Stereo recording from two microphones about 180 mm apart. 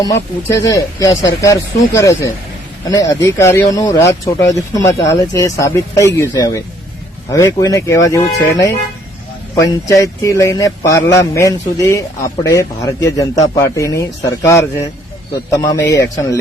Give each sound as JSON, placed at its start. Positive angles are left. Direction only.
{"t": 0.0, "sound": "speech", "side_deg": 15}